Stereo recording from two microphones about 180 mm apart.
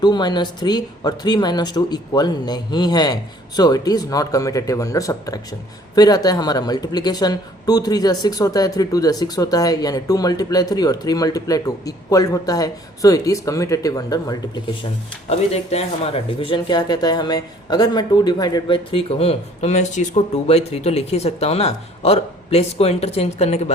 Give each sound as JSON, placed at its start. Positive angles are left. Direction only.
{"t": 0.0, "sound": "speech", "side_deg": 25}
{"t": 15.3, "sound": "speech", "side_deg": 35}